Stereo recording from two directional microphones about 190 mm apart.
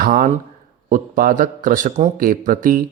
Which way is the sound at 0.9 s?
45° right (ahead or behind).